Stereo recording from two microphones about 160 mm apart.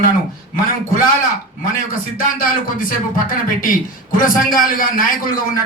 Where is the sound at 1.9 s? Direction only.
60° left (ahead or behind).